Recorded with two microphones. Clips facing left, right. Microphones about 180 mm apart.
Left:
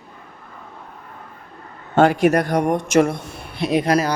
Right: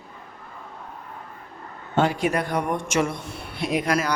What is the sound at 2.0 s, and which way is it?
Speech, 50° left (ahead or behind).